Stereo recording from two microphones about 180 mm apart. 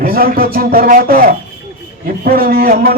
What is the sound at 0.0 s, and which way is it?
A man's voice, 55° right (ahead or behind).